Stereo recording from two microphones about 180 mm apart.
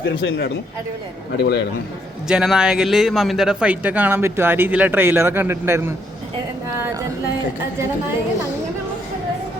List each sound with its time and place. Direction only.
0.0 s a man's voice: 70° left (ahead or behind)
2.2 s a man's voice: 5° right (ahead or behind)